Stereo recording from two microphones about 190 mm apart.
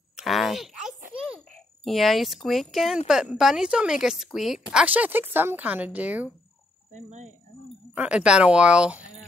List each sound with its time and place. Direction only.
0.1 s a sound: centre (ahead or behind)
1.9 s a woman's voice: centre (ahead or behind)
6.9 s speech: 40° right (ahead or behind)
7.9 s a woman's voice: 5° right (ahead or behind)